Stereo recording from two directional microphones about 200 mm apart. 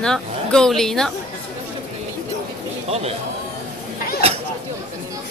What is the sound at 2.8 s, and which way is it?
Speech, 30° right (ahead or behind).